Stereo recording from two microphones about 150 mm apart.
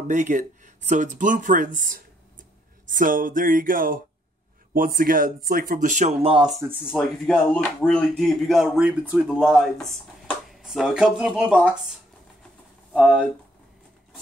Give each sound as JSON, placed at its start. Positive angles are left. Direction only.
{"t": 0.1, "sound": "speech", "side_deg": -55}
{"t": 6.8, "sound": "speech", "side_deg": 0}
{"t": 12.9, "sound": "speech", "side_deg": -5}